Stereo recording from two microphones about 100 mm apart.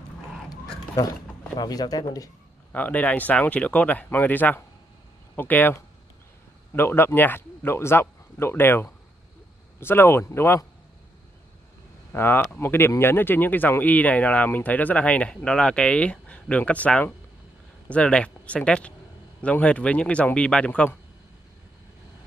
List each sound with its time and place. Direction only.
1.6 s speech: 40° left (ahead or behind)
2.7 s speech: 15° left (ahead or behind)
12.1 s speech: 20° left (ahead or behind)